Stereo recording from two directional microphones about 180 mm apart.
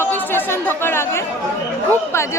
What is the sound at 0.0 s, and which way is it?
Chatter, 10° left (ahead or behind).